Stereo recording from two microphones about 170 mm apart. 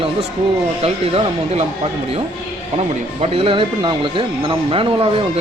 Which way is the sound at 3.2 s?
35° right (ahead or behind).